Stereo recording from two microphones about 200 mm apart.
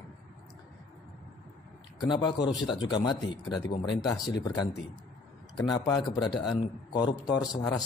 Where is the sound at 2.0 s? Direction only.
20° left (ahead or behind).